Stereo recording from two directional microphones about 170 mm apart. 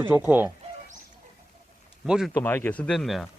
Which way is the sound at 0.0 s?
15° right (ahead or behind).